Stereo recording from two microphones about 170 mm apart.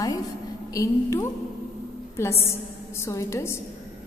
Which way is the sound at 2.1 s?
15° left (ahead or behind).